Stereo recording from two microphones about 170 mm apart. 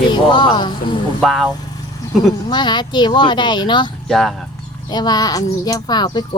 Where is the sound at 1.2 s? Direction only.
Centre (ahead or behind).